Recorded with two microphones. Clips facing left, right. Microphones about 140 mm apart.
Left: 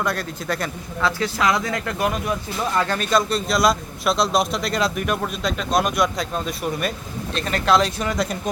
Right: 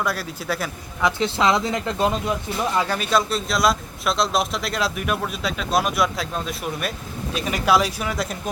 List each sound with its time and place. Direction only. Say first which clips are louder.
0.0 s a man's voice: left 1 dB; 5° right (ahead or behind)
1.0 s speech: right 1 dB; 25° right (ahead or behind)
2.7 s a man's voice: left 2 dB; 10° right (ahead or behind)